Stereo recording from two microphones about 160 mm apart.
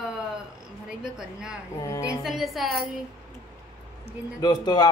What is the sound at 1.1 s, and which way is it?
Speech, 5° right (ahead or behind).